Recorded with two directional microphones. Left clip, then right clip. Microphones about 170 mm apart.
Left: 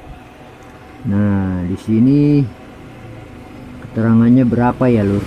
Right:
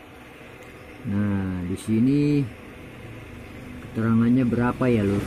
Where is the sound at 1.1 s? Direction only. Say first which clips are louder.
Left 9 dB; 15° left (ahead or behind).